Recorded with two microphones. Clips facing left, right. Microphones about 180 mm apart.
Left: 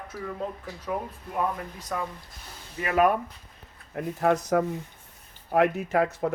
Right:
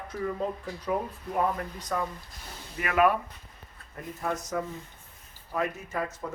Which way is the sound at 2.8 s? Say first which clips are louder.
Left 2 dB; 30° left (ahead or behind).